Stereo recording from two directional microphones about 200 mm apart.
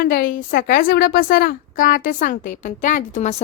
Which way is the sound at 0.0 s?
45° left (ahead or behind).